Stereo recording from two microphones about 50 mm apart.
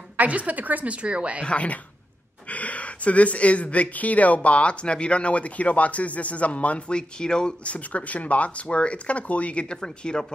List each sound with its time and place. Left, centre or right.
0.2 s a woman's voice: right
1.4 s speech: left
9.8 s speech: centre